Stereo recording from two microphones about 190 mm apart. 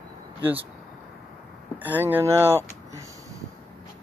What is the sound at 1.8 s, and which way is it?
Speech, 10° right (ahead or behind).